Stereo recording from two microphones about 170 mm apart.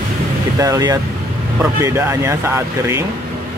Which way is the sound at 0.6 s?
20° right (ahead or behind).